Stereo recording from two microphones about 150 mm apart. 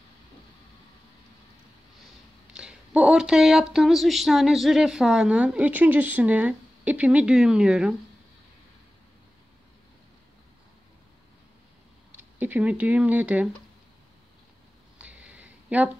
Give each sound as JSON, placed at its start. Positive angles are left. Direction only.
{"t": 2.5, "sound": "speech", "side_deg": -5}
{"t": 12.2, "sound": "speech", "side_deg": -10}
{"t": 15.0, "sound": "a sound", "side_deg": -10}